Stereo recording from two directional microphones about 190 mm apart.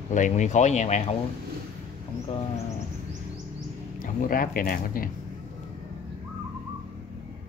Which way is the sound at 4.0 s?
50° left (ahead or behind).